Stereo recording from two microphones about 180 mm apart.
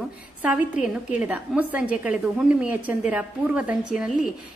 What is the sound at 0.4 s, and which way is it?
A woman's voice, 5° right (ahead or behind).